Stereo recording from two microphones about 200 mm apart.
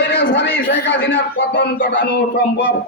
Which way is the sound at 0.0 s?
55° left (ahead or behind).